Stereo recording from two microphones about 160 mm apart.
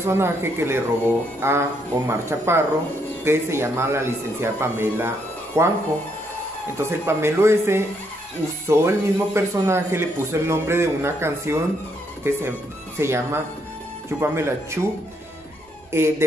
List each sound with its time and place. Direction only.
0.0 s speech: 15° right (ahead or behind)
6.8 s speech: 15° right (ahead or behind)
15.9 s speech: 15° right (ahead or behind)